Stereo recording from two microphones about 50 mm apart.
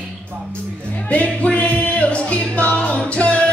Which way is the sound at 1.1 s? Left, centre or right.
Left.